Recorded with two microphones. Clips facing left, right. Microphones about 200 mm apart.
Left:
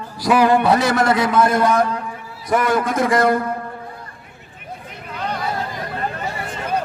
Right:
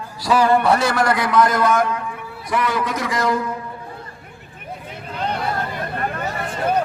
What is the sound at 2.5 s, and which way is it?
A man's voice, 45° left (ahead or behind).